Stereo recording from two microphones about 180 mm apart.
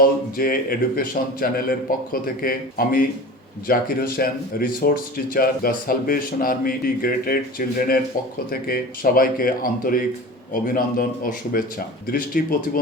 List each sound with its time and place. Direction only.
0.0 s speech: 55° left (ahead or behind)